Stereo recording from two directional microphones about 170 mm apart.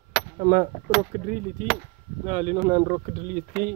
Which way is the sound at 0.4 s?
50° right (ahead or behind).